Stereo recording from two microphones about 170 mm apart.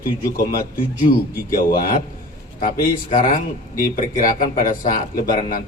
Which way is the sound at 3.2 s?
50° left (ahead or behind).